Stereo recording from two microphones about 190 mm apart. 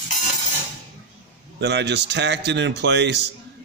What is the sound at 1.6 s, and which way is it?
A man's voice, 65° right (ahead or behind).